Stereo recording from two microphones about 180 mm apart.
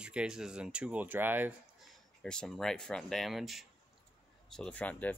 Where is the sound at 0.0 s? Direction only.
5° right (ahead or behind).